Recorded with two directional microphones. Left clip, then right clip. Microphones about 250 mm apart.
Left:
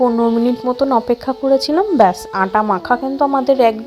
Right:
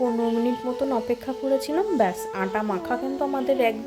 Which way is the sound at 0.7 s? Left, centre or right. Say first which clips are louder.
Left 10 dB; left.